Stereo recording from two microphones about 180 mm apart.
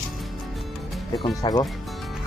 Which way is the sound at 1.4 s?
25° left (ahead or behind).